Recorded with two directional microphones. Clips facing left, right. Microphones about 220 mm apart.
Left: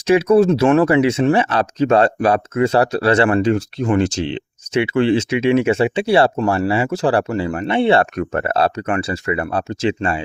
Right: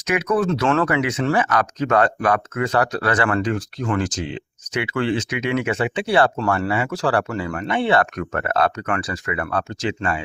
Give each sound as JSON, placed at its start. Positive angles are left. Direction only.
{"t": 0.1, "sound": "speech", "side_deg": 30}